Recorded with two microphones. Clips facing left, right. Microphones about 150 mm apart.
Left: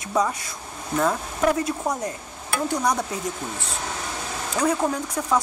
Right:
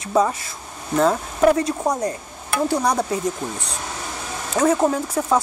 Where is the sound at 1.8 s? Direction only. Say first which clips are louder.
Right 5 dB; 20° right (ahead or behind).